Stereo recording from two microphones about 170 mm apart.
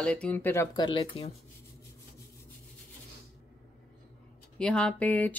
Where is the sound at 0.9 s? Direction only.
35° left (ahead or behind).